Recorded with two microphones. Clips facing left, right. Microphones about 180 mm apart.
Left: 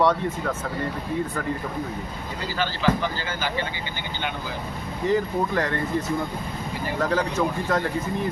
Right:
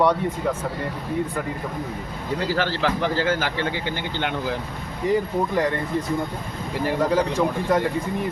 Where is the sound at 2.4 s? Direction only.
75° right (ahead or behind).